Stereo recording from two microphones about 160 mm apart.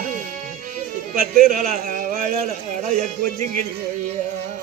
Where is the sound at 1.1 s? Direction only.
60° right (ahead or behind).